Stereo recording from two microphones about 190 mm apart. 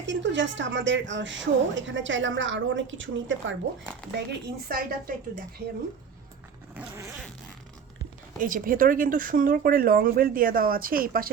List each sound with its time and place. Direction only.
0.0 s a woman's voice: 70° right (ahead or behind)
4.3 s speech: 50° right (ahead or behind)
6.7 s zipper: 15° right (ahead or behind)
8.4 s speech: 45° right (ahead or behind)